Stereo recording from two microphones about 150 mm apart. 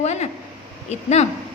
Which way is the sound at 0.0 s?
45° left (ahead or behind).